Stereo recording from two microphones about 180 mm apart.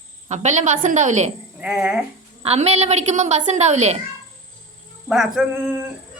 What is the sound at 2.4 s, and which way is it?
A woman's voice, 35° right (ahead or behind).